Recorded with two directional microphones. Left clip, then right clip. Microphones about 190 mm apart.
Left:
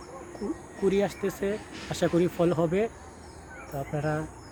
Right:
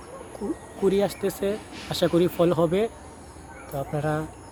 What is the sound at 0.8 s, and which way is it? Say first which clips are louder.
Speech: right 3 dB; 15° right (ahead or behind).